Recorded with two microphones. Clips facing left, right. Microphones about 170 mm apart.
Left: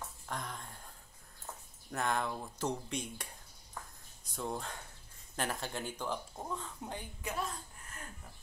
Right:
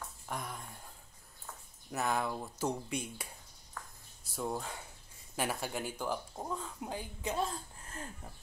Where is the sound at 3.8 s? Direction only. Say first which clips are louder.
Left 1 dB; 20° left (ahead or behind).